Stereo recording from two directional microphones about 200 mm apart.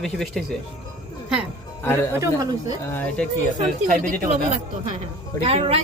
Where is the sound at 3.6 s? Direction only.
35° right (ahead or behind).